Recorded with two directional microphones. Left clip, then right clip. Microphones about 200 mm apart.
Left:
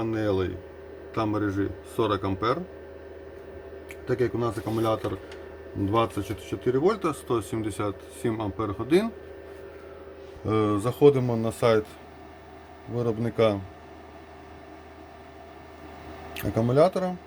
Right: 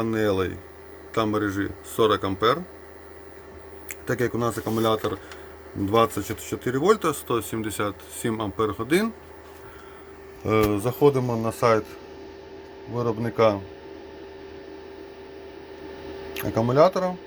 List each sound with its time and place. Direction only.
0.0 s a man's voice: 15° right (ahead or behind)
4.0 s a man's voice: 15° right (ahead or behind)
10.4 s speech: centre (ahead or behind)
13.0 s speech: 15° left (ahead or behind)
16.3 s speech: 15° left (ahead or behind)